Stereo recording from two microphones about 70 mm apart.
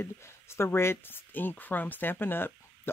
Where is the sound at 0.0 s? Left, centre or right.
Left.